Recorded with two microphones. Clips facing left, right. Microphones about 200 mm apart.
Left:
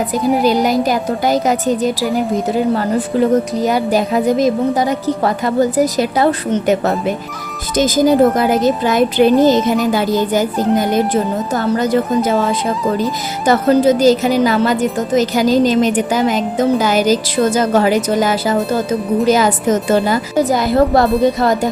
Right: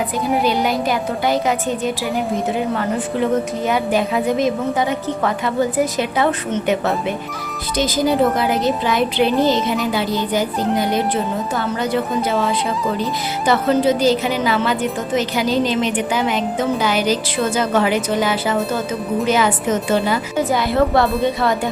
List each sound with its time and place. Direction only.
0.4 s speech: 40° left (ahead or behind)
2.0 s speech: centre (ahead or behind)
2.5 s speech: 35° left (ahead or behind)
12.6 s speech: centre (ahead or behind)
13.4 s speech: 45° left (ahead or behind)